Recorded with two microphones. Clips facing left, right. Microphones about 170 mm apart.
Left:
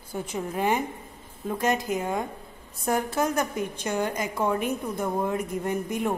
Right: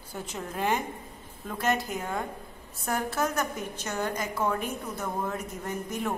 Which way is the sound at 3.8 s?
15° left (ahead or behind).